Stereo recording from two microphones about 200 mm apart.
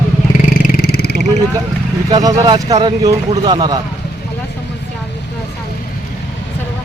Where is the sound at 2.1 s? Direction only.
20° right (ahead or behind).